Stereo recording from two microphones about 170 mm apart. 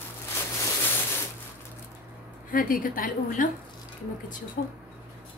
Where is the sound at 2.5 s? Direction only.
55° left (ahead or behind).